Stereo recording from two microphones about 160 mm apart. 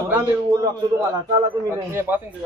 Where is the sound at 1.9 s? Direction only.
10° right (ahead or behind).